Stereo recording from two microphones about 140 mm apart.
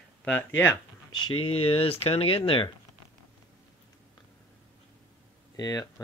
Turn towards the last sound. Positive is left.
turn(degrees=25)  # may be behind; listen again after turning